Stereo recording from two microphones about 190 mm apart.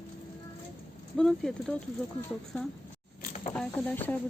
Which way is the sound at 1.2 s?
5° left (ahead or behind).